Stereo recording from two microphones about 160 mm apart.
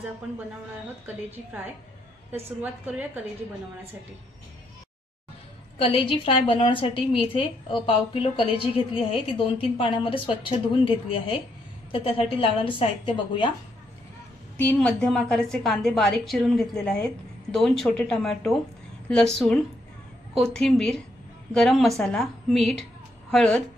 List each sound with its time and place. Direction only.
5.8 s a woman's voice: 35° left (ahead or behind)
14.6 s a woman's voice: 10° left (ahead or behind)